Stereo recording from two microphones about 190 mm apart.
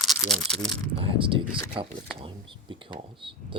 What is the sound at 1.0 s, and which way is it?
Speech, 25° right (ahead or behind).